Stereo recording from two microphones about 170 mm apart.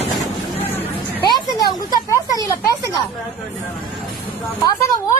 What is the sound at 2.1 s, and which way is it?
Speech, 20° left (ahead or behind).